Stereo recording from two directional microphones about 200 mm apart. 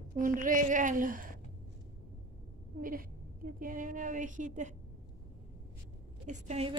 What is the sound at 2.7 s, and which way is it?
A woman's voice, 45° right (ahead or behind).